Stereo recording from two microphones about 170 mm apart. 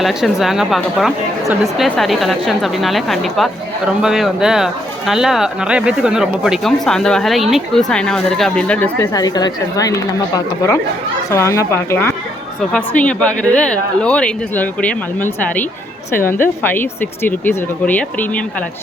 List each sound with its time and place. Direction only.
0.0 s speech: 5° right (ahead or behind)
9.0 s a woman's voice: 20° left (ahead or behind)